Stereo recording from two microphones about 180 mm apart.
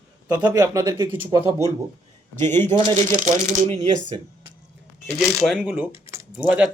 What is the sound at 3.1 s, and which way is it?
Speech, 45° right (ahead or behind).